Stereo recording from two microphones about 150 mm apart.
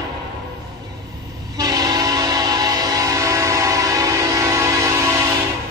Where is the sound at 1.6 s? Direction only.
25° right (ahead or behind).